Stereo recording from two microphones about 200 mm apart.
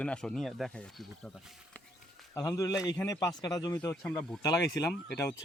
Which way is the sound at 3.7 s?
5° left (ahead or behind).